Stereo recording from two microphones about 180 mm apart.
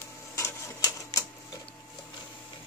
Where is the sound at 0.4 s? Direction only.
15° left (ahead or behind).